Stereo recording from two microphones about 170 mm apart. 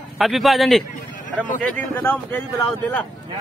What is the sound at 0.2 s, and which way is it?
Speech, centre (ahead or behind).